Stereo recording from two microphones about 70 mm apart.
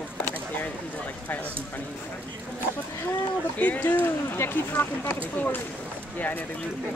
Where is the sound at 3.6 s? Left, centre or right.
Left.